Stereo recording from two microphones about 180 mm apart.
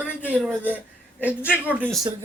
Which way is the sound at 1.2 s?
5° right (ahead or behind).